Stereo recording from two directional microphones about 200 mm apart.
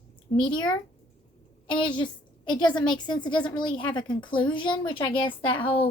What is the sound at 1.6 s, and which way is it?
A woman's voice, 25° left (ahead or behind).